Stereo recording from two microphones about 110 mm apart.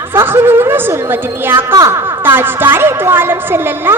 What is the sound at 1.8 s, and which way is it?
Speech, 30° right (ahead or behind).